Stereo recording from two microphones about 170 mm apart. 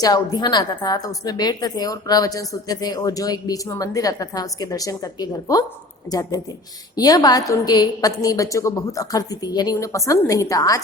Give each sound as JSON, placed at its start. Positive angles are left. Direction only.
{"t": 0.0, "sound": "a woman's voice", "side_deg": 25}